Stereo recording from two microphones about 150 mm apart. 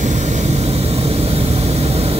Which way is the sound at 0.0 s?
50° right (ahead or behind).